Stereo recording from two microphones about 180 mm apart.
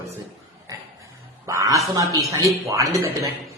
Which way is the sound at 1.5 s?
15° right (ahead or behind).